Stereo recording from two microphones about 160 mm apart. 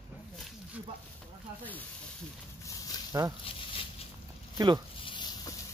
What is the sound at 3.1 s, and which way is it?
Speech, 20° right (ahead or behind).